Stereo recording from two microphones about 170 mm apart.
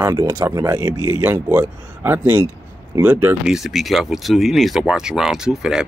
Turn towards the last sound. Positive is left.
turn(degrees=-5)  # may be behind; listen again after turning